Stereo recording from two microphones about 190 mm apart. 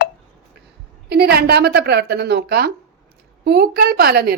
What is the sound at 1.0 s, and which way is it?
A woman's voice, 60° right (ahead or behind).